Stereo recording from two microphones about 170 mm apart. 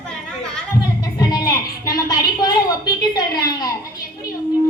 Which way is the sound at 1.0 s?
25° left (ahead or behind).